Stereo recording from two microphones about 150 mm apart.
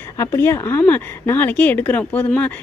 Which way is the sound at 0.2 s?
15° left (ahead or behind).